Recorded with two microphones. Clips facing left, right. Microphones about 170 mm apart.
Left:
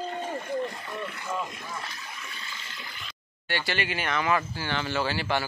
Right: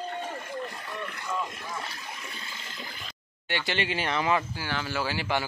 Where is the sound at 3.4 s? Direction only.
20° right (ahead or behind).